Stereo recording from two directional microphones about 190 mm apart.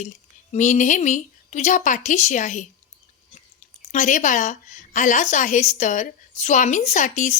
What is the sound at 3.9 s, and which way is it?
A woman's voice, 40° left (ahead or behind).